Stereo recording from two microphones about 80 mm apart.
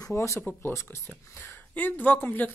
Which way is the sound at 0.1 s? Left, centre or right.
Left.